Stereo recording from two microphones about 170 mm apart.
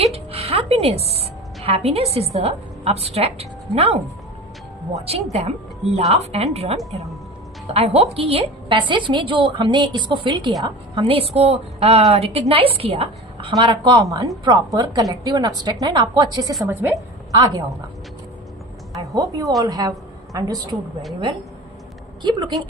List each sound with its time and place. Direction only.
0.0 s music: 35° right (ahead or behind)
1.6 s a woman's voice: 35° right (ahead or behind)
5.0 s a woman's voice: 35° right (ahead or behind)
13.5 s a woman's voice: 25° right (ahead or behind)
18.9 s a woman's voice: 20° right (ahead or behind)
22.2 s a woman's voice: 25° right (ahead or behind)